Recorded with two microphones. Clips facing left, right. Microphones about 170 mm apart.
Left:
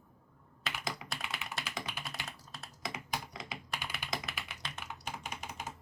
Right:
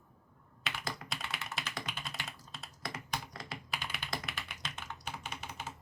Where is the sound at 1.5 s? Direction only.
5° left (ahead or behind).